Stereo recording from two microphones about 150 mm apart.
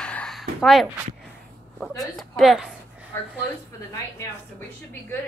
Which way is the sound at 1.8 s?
Centre (ahead or behind).